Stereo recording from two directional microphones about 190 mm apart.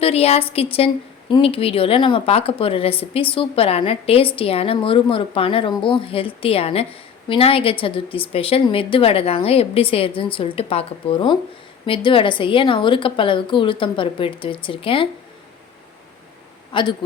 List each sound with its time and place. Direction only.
0.0 s a woman's voice: 30° left (ahead or behind)
16.7 s a woman's voice: 25° left (ahead or behind)